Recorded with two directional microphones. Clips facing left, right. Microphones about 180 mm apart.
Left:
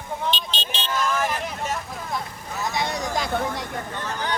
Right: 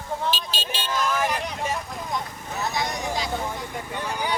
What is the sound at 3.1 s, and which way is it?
Speech, 55° left (ahead or behind).